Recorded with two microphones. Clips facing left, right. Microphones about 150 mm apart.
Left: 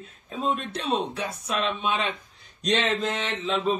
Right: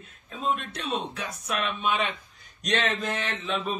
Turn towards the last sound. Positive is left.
turn(degrees=20)  # may be behind; listen again after turning